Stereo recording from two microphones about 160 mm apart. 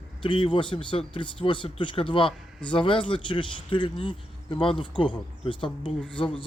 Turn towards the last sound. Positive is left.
turn(degrees=30)  # may be behind; listen again after turning